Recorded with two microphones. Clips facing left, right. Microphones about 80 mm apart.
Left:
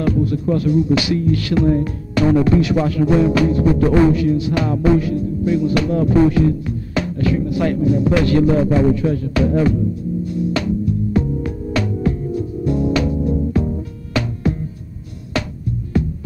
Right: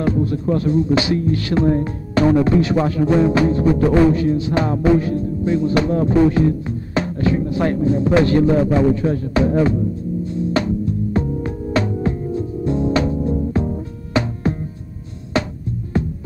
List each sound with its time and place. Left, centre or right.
0.0 s music: right